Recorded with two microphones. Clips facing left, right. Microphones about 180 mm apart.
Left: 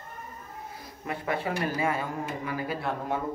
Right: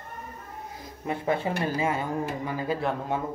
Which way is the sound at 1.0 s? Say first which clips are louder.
Right 3 dB; 25° right (ahead or behind).